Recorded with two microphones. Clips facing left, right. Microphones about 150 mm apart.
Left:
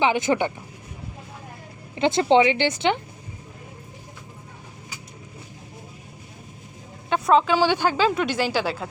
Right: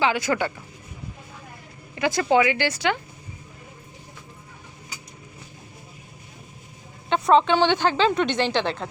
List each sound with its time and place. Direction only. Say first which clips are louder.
0.0 s speech: left 2 dB; 20° left (ahead or behind)
2.0 s speech: left 3 dB; 25° left (ahead or behind)
7.1 s a woman's voice: right 1 dB; 5° left (ahead or behind)